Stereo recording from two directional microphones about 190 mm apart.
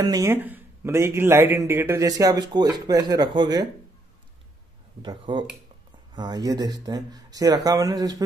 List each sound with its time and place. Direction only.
0.0 s a man's voice: 20° right (ahead or behind)
5.0 s speech: 25° right (ahead or behind)